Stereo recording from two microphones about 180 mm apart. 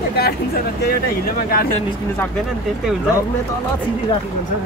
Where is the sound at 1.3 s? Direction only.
55° left (ahead or behind).